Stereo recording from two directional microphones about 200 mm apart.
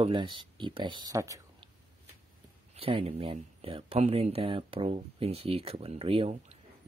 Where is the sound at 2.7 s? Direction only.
30° right (ahead or behind).